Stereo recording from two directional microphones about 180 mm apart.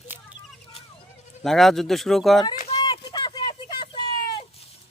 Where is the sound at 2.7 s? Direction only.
25° left (ahead or behind).